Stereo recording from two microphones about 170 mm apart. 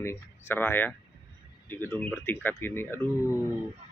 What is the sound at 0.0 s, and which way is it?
Speech, 15° left (ahead or behind).